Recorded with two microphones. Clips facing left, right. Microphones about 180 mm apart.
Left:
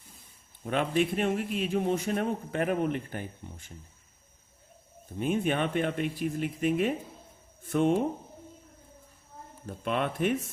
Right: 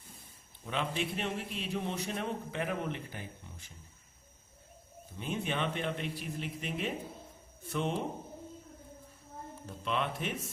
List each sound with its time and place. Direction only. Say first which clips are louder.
0.6 s a man's voice: left 8 dB; 50° left (ahead or behind)
5.2 s a man's voice: left 7 dB; 50° left (ahead or behind)
9.6 s a man's voice: left 5 dB; 50° left (ahead or behind)